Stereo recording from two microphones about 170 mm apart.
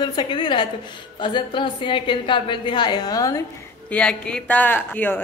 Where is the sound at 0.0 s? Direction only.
25° left (ahead or behind).